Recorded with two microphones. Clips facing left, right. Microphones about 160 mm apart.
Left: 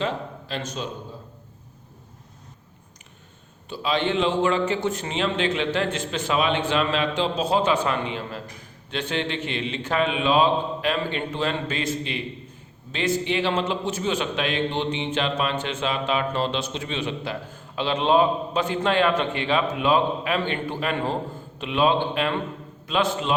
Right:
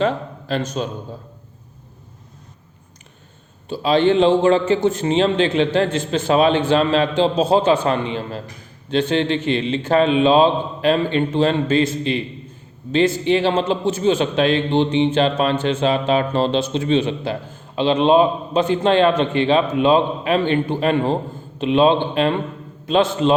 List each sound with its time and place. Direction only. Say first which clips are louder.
0.0 s a man's voice: right 7 dB; 45° right (ahead or behind)
3.7 s a man's voice: right 9 dB; 35° right (ahead or behind)